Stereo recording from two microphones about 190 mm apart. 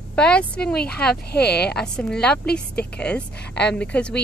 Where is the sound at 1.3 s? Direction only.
60° left (ahead or behind).